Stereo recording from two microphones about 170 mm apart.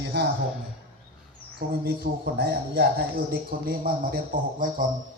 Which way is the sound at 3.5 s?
60° right (ahead or behind).